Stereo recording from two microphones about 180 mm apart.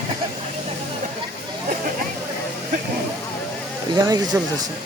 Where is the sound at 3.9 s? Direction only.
20° right (ahead or behind).